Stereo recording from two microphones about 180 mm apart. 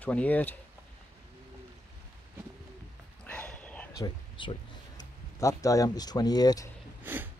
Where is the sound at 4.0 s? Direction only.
25° left (ahead or behind).